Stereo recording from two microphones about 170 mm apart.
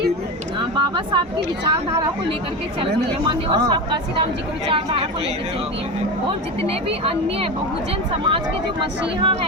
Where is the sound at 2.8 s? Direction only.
30° right (ahead or behind).